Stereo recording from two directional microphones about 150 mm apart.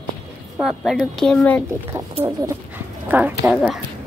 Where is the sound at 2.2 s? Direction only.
20° right (ahead or behind); by 3.8 s 5° right (ahead or behind).